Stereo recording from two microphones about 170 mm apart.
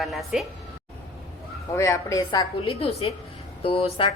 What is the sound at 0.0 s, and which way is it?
Speech, centre (ahead or behind).